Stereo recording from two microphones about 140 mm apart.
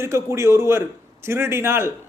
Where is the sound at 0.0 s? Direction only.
20° right (ahead or behind).